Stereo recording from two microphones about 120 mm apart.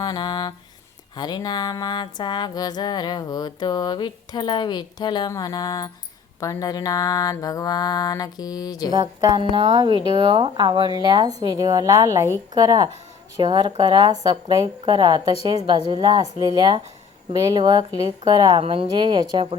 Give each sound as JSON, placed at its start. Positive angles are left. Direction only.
{"t": 0.0, "sound": "music", "side_deg": 35}
{"t": 8.9, "sound": "speech", "side_deg": -35}
{"t": 9.7, "sound": "speech", "side_deg": -40}
{"t": 18.6, "sound": "speech", "side_deg": -50}
{"t": 18.9, "sound": "speech", "side_deg": -40}